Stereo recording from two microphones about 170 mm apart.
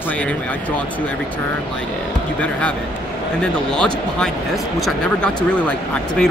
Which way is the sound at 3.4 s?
5° left (ahead or behind).